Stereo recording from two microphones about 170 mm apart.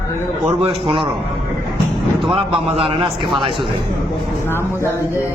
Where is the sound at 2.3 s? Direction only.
35° right (ahead or behind).